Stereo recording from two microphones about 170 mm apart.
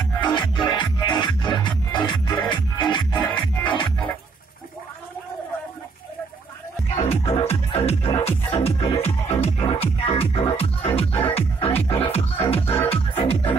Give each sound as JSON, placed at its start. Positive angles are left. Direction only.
{"t": 0.2, "sound": "music", "side_deg": 25}
{"t": 7.0, "sound": "music", "side_deg": 40}